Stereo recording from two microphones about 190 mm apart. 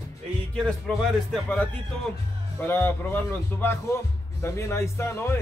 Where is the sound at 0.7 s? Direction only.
Centre (ahead or behind).